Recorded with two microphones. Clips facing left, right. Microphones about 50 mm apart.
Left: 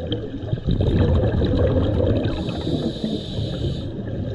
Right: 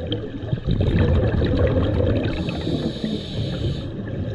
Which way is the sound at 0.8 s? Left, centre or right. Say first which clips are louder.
Left 1 dB; right.